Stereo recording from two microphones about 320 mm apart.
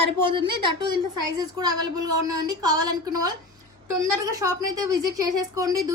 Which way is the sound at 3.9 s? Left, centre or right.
Centre.